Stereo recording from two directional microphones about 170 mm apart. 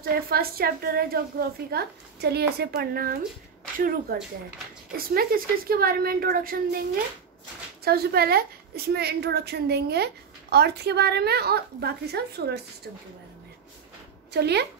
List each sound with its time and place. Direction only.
0.0 s a woman's voice: 65° right (ahead or behind)
7.8 s a woman's voice: 65° right (ahead or behind)
14.3 s a woman's voice: 75° right (ahead or behind)